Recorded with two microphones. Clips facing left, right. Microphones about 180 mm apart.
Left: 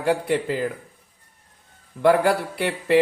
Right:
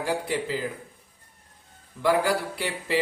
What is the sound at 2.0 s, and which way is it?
Speech, 60° left (ahead or behind).